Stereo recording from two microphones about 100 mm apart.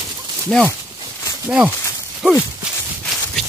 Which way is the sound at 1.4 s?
15° right (ahead or behind).